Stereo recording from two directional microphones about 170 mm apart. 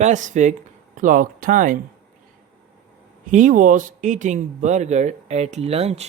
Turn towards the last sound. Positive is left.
turn(degrees=-35)  # may be behind; listen again after turning